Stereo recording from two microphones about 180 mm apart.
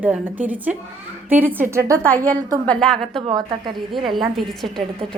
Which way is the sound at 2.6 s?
5° left (ahead or behind).